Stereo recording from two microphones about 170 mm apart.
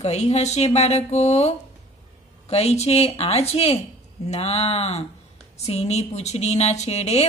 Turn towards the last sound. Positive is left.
turn(degrees=40)  # may be behind; listen again after turning